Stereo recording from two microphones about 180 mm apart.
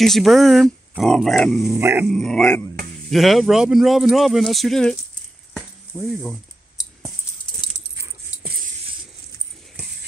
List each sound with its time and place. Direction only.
0.0 s speech: centre (ahead or behind)
1.8 s dog: 15° right (ahead or behind)
2.0 s speech: centre (ahead or behind)
5.5 s sizzle: 5° left (ahead or behind)